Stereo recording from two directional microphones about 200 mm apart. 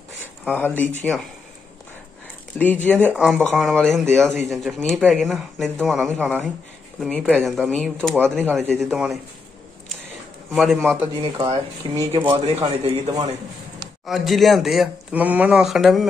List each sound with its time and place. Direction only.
0.6 s speech: 10° left (ahead or behind)
2.6 s speech: 10° left (ahead or behind)
3.2 s speech: 5° right (ahead or behind)
3.9 s speech: 10° right (ahead or behind)
4.5 s speech: centre (ahead or behind)
10.5 s speech: centre (ahead or behind)
11.1 s speech: 25° right (ahead or behind)
12.3 s speech: 30° right (ahead or behind)
14.0 s speech: centre (ahead or behind)